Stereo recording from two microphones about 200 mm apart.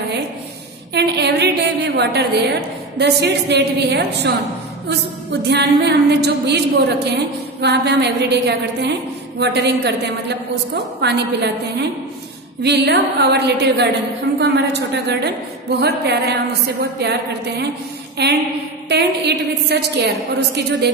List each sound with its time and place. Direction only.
0.9 s a sound: 55° right (ahead or behind)
3.0 s a woman's voice: 55° right (ahead or behind)
5.5 s a woman's voice: 55° right (ahead or behind)
18.2 s a woman's voice: 55° right (ahead or behind)